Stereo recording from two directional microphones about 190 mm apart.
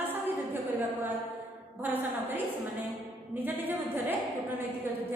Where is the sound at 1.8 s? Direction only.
10° right (ahead or behind).